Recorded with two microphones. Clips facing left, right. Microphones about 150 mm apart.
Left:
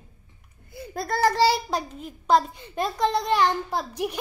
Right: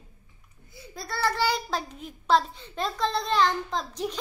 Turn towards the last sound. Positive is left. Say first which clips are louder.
# left 3 dB
turn(degrees=10)  # may be behind; listen again after turning